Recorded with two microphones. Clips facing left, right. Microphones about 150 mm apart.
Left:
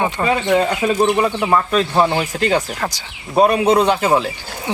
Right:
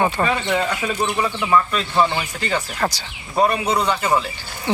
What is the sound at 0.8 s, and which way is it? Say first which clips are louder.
Speech: left 6 dB; 45° left (ahead or behind).